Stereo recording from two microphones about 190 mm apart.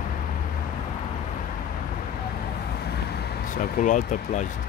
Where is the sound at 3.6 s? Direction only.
40° left (ahead or behind).